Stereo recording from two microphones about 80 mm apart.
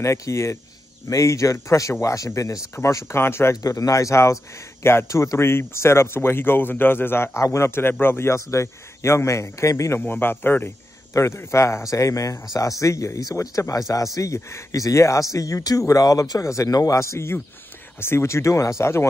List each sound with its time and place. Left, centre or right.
0.0 s speech: left
3.6 s speech: left
9.9 s a man's voice: left
11.1 s speech: left